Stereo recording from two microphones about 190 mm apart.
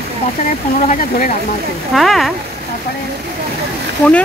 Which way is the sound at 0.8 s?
40° left (ahead or behind).